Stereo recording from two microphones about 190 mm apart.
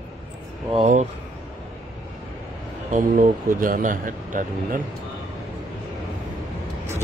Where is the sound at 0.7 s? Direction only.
40° right (ahead or behind).